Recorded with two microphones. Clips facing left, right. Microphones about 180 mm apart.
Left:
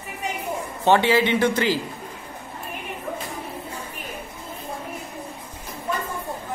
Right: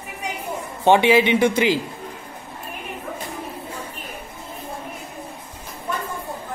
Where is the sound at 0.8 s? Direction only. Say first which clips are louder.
Right 3 dB; 15° right (ahead or behind).